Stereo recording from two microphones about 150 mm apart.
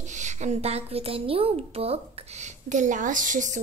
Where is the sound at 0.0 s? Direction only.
55° right (ahead or behind).